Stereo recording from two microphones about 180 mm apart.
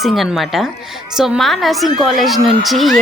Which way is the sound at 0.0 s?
Centre (ahead or behind).